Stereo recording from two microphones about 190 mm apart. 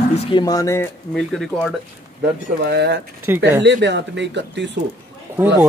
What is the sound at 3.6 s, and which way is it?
Speech, 65° right (ahead or behind).